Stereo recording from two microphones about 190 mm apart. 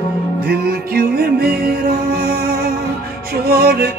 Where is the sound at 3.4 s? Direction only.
55° right (ahead or behind).